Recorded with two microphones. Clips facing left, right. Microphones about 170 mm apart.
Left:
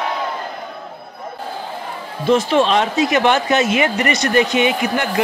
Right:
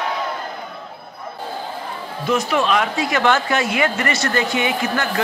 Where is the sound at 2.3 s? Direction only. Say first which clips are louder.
Left 4 dB; 25° left (ahead or behind).